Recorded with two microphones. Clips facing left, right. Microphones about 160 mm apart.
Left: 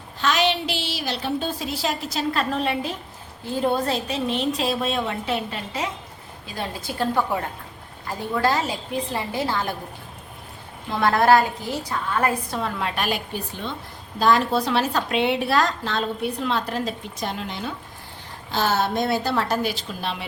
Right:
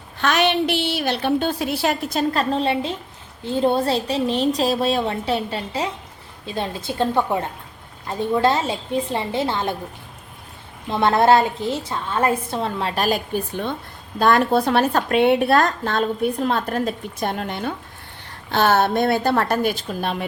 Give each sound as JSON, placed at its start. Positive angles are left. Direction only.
{"t": 0.2, "sound": "a woman's voice", "side_deg": -60}
{"t": 2.3, "sound": "a woman's voice", "side_deg": -30}
{"t": 10.8, "sound": "a woman's voice", "side_deg": -25}